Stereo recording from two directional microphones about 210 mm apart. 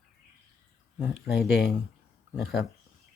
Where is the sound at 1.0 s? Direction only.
Centre (ahead or behind).